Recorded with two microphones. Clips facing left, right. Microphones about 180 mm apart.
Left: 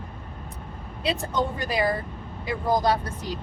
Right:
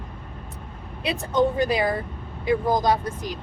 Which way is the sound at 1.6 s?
20° right (ahead or behind).